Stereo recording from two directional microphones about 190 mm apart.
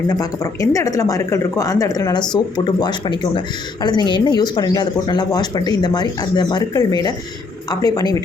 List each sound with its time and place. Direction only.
0.1 s speech: 20° left (ahead or behind)